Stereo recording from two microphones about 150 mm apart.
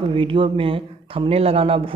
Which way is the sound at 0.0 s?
35° right (ahead or behind).